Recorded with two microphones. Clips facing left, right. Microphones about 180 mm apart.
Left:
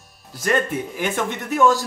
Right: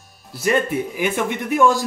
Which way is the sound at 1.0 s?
10° right (ahead or behind).